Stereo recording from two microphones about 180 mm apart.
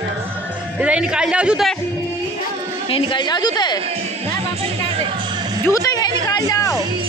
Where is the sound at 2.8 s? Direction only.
30° left (ahead or behind).